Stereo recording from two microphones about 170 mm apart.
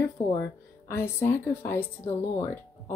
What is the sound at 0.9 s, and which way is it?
Speech, 15° left (ahead or behind).